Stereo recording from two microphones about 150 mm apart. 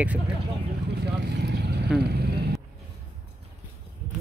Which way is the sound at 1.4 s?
90° right.